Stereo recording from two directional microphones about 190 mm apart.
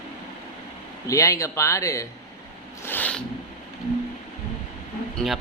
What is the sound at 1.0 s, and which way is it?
A man's voice, 15° left (ahead or behind).